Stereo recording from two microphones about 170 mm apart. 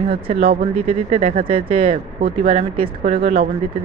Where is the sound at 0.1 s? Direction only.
35° right (ahead or behind).